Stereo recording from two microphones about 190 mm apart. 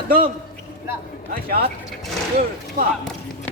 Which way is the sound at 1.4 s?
50° right (ahead or behind).